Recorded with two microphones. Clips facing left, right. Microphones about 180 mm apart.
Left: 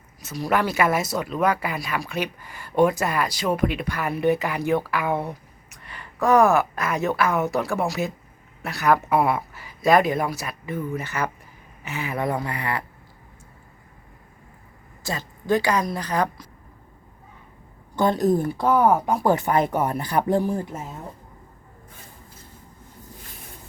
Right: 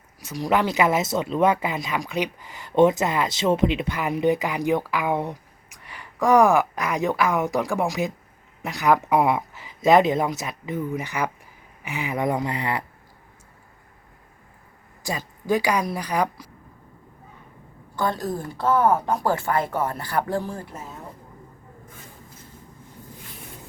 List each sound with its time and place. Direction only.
0.2 s speech: 15° right (ahead or behind)
15.0 s speech: 10° right (ahead or behind)
17.9 s a woman's voice: 20° left (ahead or behind)